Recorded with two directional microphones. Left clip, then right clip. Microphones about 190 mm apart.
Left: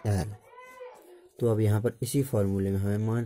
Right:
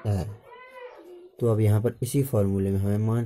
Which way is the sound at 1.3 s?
25° left (ahead or behind).